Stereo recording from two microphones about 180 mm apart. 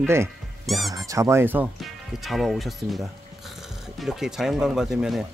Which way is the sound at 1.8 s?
Centre (ahead or behind).